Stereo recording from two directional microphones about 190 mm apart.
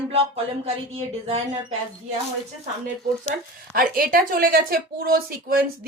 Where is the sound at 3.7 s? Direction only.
50° right (ahead or behind).